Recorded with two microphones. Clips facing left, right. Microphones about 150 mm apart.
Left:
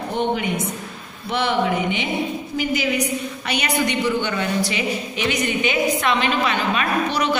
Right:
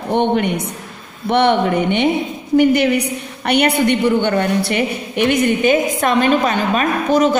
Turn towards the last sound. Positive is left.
turn(degrees=-45)  # may be behind; listen again after turning